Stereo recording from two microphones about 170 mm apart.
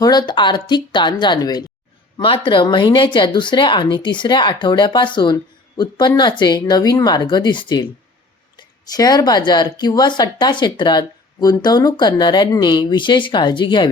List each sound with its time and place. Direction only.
0.0 s speech: 25° left (ahead or behind)